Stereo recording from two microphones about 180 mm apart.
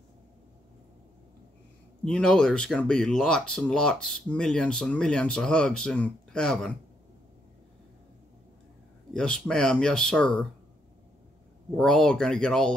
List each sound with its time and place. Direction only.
2.0 s speech: 5° left (ahead or behind)
9.1 s speech: 5° left (ahead or behind)
11.7 s speech: 5° left (ahead or behind)